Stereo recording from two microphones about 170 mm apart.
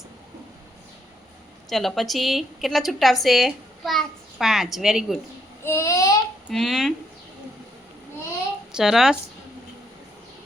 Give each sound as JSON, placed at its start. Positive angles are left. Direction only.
{"t": 1.7, "sound": "a woman's voice", "side_deg": 0}
{"t": 5.6, "sound": "child singing", "side_deg": 15}
{"t": 6.5, "sound": "a woman's voice", "side_deg": 0}
{"t": 8.7, "sound": "a woman's voice", "side_deg": 0}